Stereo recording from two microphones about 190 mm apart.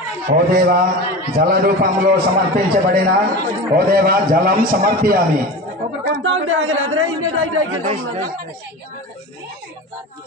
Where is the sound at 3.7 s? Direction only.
50° right (ahead or behind).